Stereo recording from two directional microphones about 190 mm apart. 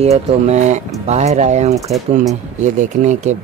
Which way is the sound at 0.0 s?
35° right (ahead or behind).